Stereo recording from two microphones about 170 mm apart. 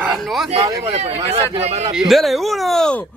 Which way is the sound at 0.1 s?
Centre (ahead or behind).